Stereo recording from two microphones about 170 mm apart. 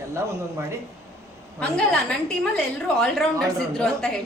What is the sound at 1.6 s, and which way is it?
A woman's voice, 5° left (ahead or behind).